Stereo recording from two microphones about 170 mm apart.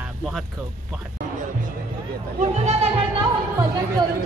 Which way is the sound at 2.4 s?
40° right (ahead or behind).